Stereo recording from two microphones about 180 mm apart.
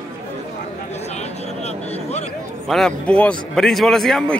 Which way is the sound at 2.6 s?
Centre (ahead or behind).